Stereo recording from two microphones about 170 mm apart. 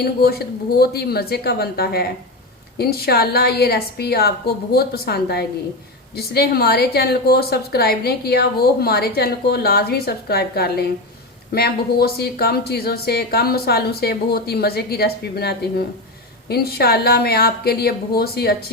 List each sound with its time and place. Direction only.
0.0 s a woman's voice: 65° left (ahead or behind)